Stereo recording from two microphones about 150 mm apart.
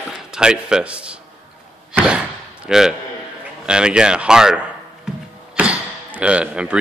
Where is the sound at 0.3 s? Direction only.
5° right (ahead or behind).